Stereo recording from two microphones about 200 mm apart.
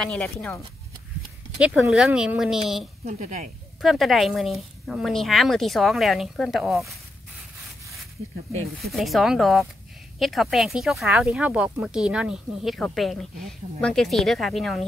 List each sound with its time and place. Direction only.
0.0 s speech: 5° left (ahead or behind)
1.6 s speech: 5° right (ahead or behind)
3.1 s speech: 40° right (ahead or behind)
3.8 s speech: centre (ahead or behind)
8.9 s speech: centre (ahead or behind)